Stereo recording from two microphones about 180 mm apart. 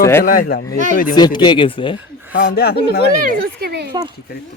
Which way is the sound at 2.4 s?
55° left (ahead or behind).